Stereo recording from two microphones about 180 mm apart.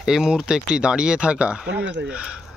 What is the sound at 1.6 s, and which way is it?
Speech, 90° right.